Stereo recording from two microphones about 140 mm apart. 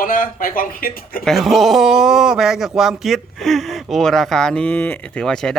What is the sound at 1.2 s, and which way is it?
Speech, centre (ahead or behind).